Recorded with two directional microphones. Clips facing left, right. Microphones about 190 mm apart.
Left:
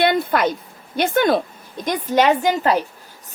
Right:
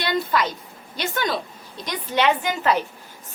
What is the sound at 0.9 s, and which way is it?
A woman's voice, 55° left (ahead or behind).